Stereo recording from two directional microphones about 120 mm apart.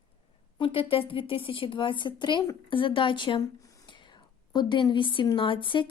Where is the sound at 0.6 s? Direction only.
50° left (ahead or behind).